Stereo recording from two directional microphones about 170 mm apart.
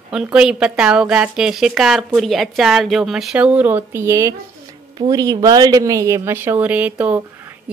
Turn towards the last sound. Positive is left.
turn(degrees=-10)  # may be behind; listen again after turning